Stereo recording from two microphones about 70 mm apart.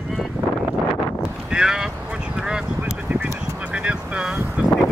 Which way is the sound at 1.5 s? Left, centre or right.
Centre.